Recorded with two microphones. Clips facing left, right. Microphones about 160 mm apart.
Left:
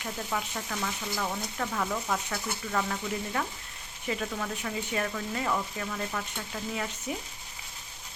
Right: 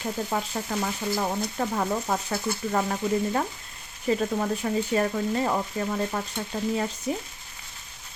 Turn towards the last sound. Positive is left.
turn(degrees=-35)  # may be behind; listen again after turning